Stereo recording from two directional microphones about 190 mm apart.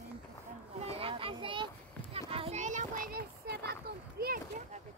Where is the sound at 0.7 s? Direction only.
35° right (ahead or behind); by 4.3 s 55° right (ahead or behind).